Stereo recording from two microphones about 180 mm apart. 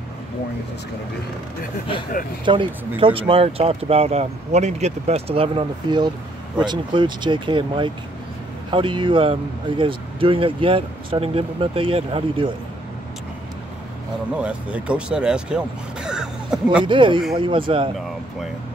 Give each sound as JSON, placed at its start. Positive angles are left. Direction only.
{"t": 2.4, "sound": "speech", "side_deg": -25}
{"t": 14.3, "sound": "speech", "side_deg": -5}
{"t": 16.8, "sound": "speech", "side_deg": -25}